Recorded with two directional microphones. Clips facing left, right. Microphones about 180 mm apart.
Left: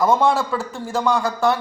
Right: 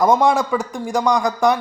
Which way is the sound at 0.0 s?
15° right (ahead or behind).